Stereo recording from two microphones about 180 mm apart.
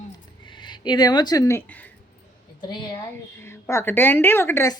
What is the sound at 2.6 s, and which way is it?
Speech, 20° left (ahead or behind).